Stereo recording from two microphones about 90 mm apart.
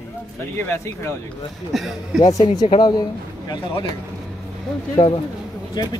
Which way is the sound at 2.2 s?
45° left (ahead or behind).